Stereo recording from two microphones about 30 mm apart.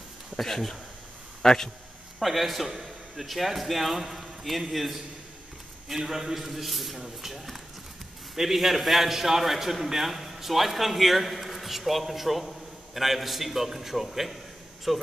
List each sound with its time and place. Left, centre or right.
0.4 s speech: centre
1.4 s speech: centre
2.1 s a man's voice: centre